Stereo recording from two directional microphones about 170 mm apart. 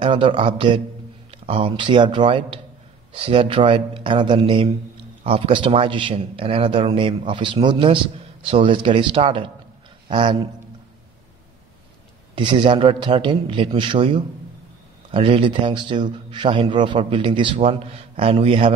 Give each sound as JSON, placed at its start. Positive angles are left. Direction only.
{"t": 0.0, "sound": "a man's voice", "side_deg": -30}
{"t": 12.4, "sound": "a man's voice", "side_deg": -30}